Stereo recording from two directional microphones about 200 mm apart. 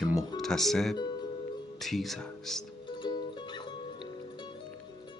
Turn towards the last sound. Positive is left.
turn(degrees=25)  # may be behind; listen again after turning